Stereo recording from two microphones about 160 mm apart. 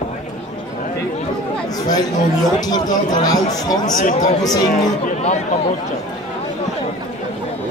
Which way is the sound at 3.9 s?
50° left (ahead or behind).